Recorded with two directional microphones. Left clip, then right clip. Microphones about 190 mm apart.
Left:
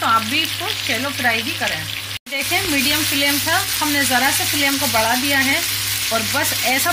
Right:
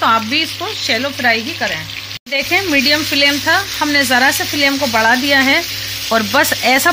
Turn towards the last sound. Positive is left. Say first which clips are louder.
# right 6 dB
turn(degrees=-50)  # may be behind; listen again after turning